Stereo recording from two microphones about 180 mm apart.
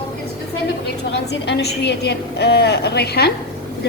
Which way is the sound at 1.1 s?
70° left (ahead or behind).